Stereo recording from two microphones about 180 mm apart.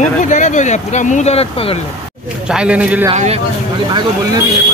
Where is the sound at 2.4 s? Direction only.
5° right (ahead or behind).